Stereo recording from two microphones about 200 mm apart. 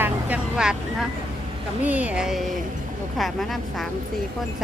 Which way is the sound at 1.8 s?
5° right (ahead or behind).